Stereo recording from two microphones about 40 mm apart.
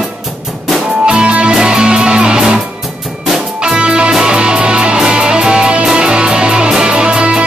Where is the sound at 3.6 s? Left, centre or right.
Right.